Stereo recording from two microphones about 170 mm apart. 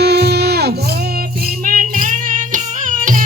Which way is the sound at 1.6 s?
50° right (ahead or behind).